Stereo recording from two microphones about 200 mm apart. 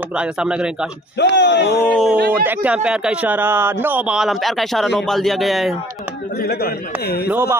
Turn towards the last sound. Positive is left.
turn(degrees=50)  # may be behind; listen again after turning